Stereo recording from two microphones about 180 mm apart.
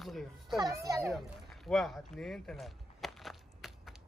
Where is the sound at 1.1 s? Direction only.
Centre (ahead or behind).